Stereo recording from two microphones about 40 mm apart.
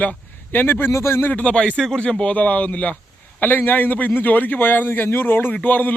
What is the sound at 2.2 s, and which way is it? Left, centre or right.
Speech, left.